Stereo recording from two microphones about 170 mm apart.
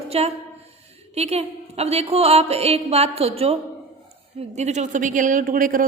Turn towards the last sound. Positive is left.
turn(degrees=-55)  # may be behind; listen again after turning